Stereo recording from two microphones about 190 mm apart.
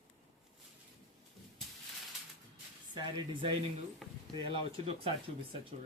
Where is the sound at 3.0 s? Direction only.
25° right (ahead or behind).